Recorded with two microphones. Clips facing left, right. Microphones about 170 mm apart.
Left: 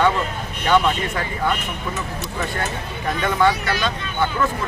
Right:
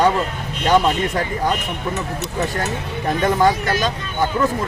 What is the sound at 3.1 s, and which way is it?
Speech, 40° right (ahead or behind).